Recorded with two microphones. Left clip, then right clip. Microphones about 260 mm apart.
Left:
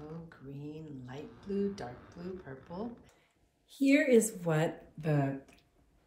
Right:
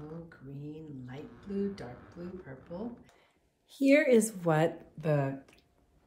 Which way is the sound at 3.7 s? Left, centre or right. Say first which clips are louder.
Right 3 dB; right.